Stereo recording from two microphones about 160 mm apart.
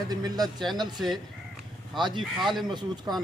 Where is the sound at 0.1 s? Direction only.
25° right (ahead or behind).